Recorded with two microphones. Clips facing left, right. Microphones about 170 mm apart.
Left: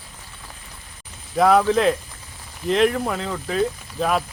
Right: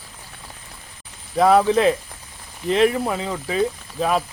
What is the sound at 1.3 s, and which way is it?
Speech, centre (ahead or behind).